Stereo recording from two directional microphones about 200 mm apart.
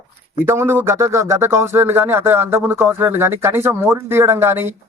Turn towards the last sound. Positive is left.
turn(degrees=-10)  # may be behind; listen again after turning